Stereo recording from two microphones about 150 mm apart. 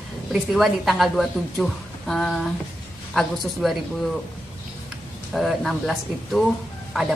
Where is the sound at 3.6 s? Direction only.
Centre (ahead or behind).